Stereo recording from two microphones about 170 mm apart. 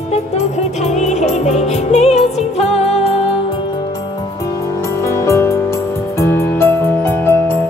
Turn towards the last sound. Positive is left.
turn(degrees=10)  # may be behind; listen again after turning